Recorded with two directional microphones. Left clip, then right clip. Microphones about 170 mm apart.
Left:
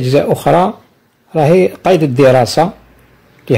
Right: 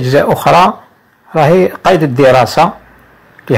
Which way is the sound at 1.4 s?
20° right (ahead or behind).